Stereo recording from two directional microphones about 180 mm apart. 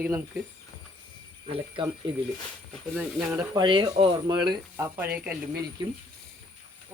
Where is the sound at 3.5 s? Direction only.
25° right (ahead or behind).